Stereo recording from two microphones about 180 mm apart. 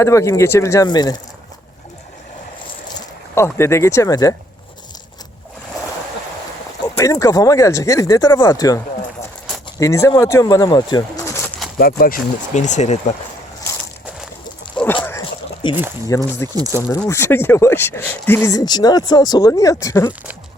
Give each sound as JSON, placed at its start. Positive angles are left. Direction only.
{"t": 0.0, "sound": "speech", "side_deg": 15}
{"t": 3.3, "sound": "speech", "side_deg": 15}
{"t": 6.8, "sound": "speech", "side_deg": 20}
{"t": 11.8, "sound": "speech", "side_deg": 55}
{"t": 16.0, "sound": "speech", "side_deg": 15}
{"t": 16.6, "sound": "speech", "side_deg": -20}
{"t": 17.1, "sound": "speech", "side_deg": 15}